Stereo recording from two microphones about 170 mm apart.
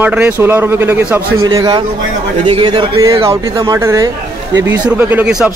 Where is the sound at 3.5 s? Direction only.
20° right (ahead or behind).